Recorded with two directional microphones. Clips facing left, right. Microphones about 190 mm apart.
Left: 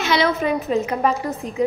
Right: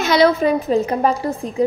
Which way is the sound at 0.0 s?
40° right (ahead or behind).